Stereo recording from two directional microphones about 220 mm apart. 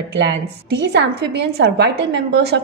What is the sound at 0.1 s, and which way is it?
A woman's voice, 55° right (ahead or behind).